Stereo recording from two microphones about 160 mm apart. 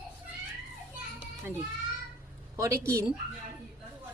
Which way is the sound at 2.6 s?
20° right (ahead or behind).